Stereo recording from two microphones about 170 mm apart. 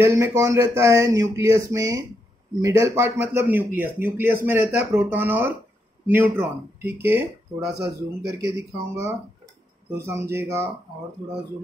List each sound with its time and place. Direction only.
0.0 s speech: 15° right (ahead or behind)
8.3 s speech: 15° right (ahead or behind)